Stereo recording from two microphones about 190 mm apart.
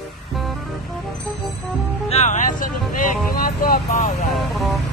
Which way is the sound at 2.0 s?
35° left (ahead or behind).